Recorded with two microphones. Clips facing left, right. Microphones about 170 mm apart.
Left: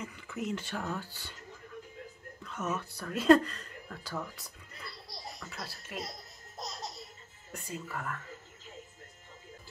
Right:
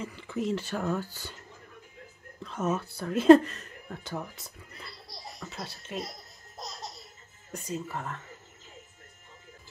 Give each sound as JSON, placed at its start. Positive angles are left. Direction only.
{"t": 0.0, "sound": "speech", "side_deg": -30}
{"t": 2.4, "sound": "speech", "side_deg": -30}
{"t": 5.0, "sound": "laughter", "side_deg": 0}
{"t": 5.5, "sound": "speech", "side_deg": -20}
{"t": 6.0, "sound": "laughter", "side_deg": 0}
{"t": 7.5, "sound": "speech", "side_deg": -25}